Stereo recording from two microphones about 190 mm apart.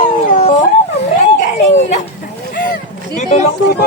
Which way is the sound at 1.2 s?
35° left (ahead or behind).